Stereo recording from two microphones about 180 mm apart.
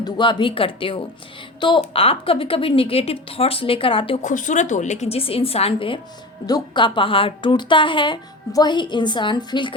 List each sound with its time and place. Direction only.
0.0 s a woman's voice: 25° left (ahead or behind)
4.2 s a woman's voice: 45° left (ahead or behind); by 9.7 s 25° left (ahead or behind)